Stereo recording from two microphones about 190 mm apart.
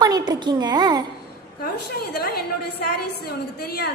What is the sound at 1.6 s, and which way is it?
A woman's voice, 55° left (ahead or behind).